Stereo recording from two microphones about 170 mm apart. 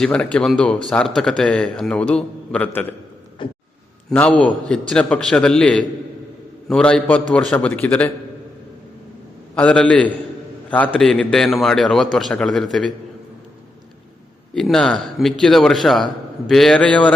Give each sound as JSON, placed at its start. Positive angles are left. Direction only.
{"t": 0.0, "sound": "a man's voice", "side_deg": 5}
{"t": 3.4, "sound": "a sound", "side_deg": 30}
{"t": 4.1, "sound": "a man's voice", "side_deg": 10}
{"t": 9.6, "sound": "a man's voice", "side_deg": 10}
{"t": 14.5, "sound": "a man's voice", "side_deg": 5}